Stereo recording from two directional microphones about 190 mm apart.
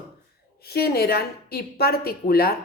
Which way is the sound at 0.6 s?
55° left (ahead or behind).